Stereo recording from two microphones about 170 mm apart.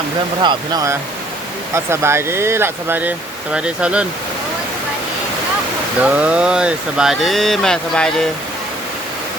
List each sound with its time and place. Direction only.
0.4 s speech: 20° right (ahead or behind); by 4.0 s 5° right (ahead or behind)
6.1 s speech: 5° right (ahead or behind)